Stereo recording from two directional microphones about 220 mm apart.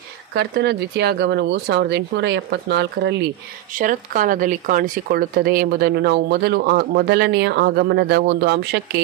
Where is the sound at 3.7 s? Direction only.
35° right (ahead or behind).